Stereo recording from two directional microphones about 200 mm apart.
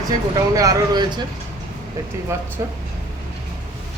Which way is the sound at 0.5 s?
15° right (ahead or behind).